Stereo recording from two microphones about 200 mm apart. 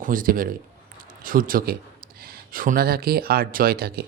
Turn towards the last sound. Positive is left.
turn(degrees=-50)  # may be behind; listen again after turning